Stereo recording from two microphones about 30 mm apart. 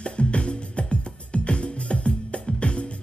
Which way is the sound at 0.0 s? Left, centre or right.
Left.